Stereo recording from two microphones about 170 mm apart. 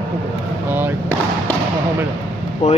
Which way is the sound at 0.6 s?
10° right (ahead or behind).